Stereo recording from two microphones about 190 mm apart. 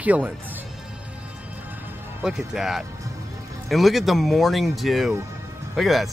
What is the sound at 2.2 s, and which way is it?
Speech, 5° right (ahead or behind).